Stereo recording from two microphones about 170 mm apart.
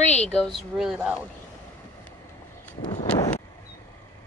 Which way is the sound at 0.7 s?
5° right (ahead or behind).